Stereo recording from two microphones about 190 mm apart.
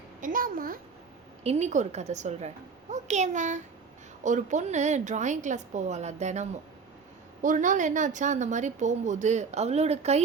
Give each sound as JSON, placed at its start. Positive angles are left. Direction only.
{"t": 0.2, "sound": "a woman's voice", "side_deg": -45}
{"t": 1.5, "sound": "a woman's voice", "side_deg": -35}